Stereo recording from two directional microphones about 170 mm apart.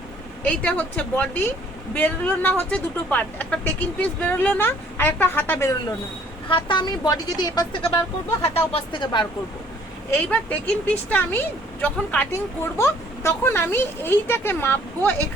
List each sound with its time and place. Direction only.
0.4 s speech: 5° left (ahead or behind)
6.5 s speech: 25° left (ahead or behind)
10.2 s speech: 10° left (ahead or behind)